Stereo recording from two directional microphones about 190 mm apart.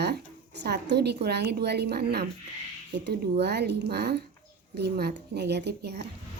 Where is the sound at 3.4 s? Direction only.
60° right (ahead or behind).